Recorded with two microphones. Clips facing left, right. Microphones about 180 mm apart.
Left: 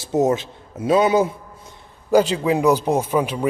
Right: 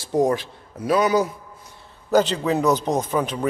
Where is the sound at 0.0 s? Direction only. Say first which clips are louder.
Left 1 dB; 20° left (ahead or behind).